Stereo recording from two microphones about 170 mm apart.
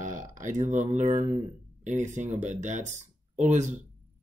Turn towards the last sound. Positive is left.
turn(degrees=-45)  # may be behind; listen again after turning